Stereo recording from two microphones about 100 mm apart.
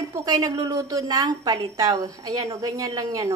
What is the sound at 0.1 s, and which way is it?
A woman's voice, 40° right (ahead or behind).